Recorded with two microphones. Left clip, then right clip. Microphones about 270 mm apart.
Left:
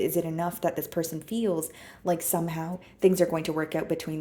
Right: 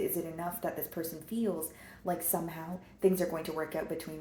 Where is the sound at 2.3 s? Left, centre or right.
Left.